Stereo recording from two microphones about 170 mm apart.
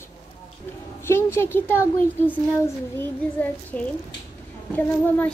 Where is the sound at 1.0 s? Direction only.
15° left (ahead or behind).